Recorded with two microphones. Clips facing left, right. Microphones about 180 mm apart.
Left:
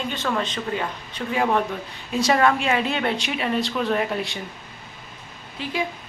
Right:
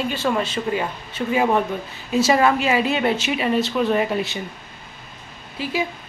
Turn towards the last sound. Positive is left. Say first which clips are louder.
# right 3 dB
turn(degrees=-5)  # may be behind; listen again after turning